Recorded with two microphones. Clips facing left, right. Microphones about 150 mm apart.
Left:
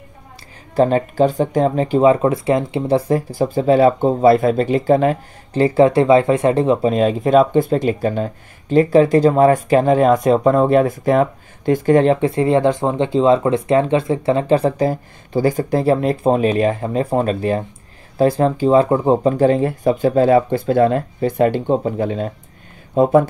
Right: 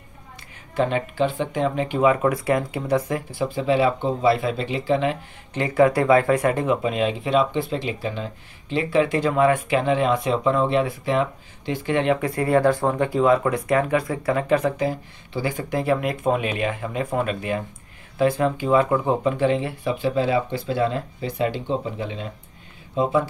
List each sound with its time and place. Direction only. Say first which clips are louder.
0.7 s speech: left 7 dB; 40° left (ahead or behind)